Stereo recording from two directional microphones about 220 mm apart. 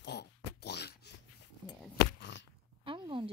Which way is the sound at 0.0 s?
50° left (ahead or behind).